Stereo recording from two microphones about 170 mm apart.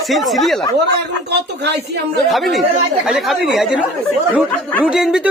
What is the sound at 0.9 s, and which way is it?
Speech, 75° right (ahead or behind).